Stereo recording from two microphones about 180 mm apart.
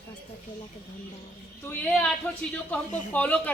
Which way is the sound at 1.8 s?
10° left (ahead or behind).